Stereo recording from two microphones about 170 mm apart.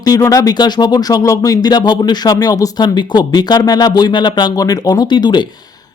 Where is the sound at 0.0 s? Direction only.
20° left (ahead or behind).